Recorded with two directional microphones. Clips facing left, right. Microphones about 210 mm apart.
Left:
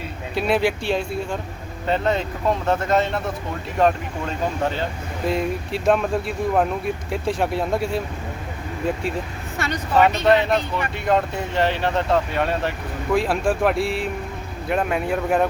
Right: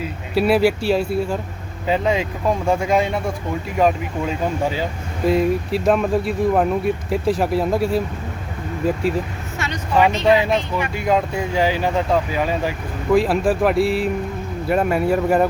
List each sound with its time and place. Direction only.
0.0 s speech: 5° right (ahead or behind)
9.6 s a sound: 35° left (ahead or behind)
10.0 s speech: centre (ahead or behind)